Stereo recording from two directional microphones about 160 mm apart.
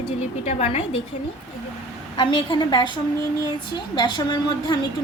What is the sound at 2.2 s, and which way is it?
A woman's voice, 30° left (ahead or behind).